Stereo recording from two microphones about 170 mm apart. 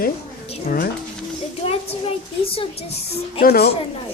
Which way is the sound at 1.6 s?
35° left (ahead or behind).